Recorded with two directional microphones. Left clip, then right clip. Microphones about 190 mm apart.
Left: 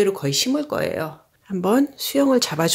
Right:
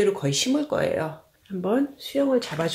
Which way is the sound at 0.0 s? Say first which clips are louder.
Left 3 dB; 40° left (ahead or behind).